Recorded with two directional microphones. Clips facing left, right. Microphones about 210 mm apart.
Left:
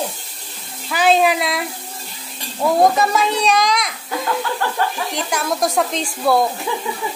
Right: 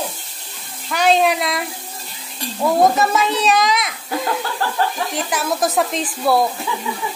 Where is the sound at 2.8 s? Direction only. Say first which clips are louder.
Even; centre (ahead or behind).